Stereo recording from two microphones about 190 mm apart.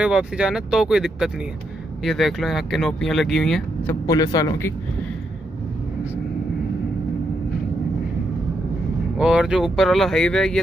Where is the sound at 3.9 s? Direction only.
20° left (ahead or behind).